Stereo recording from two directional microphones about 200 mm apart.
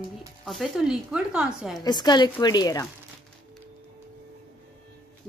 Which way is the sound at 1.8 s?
20° left (ahead or behind).